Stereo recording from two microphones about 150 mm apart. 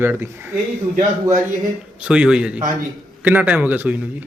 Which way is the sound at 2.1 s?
5° right (ahead or behind).